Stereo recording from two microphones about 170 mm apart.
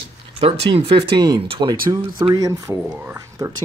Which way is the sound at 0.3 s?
35° right (ahead or behind).